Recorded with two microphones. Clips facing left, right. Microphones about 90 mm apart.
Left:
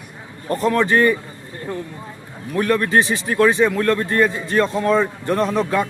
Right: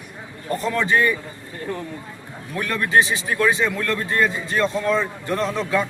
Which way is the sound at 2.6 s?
40° left (ahead or behind).